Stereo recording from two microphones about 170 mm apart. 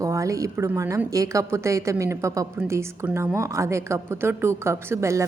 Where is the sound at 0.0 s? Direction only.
20° right (ahead or behind).